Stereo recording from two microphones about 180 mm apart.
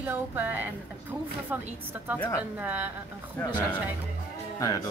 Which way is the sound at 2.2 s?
20° left (ahead or behind).